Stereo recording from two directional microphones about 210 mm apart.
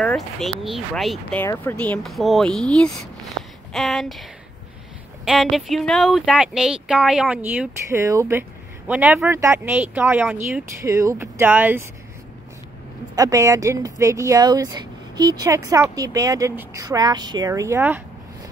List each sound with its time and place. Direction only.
0.0 s speech: centre (ahead or behind)
1.4 s speech: 10° left (ahead or behind); by 11.8 s 10° right (ahead or behind)
13.1 s speech: 15° right (ahead or behind)